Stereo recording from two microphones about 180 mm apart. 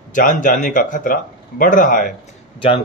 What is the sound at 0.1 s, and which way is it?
Speech, 50° left (ahead or behind).